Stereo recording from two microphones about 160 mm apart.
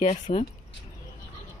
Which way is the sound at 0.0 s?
50° left (ahead or behind).